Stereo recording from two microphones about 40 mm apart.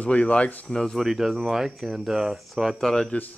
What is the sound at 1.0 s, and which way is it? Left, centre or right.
Speech, centre.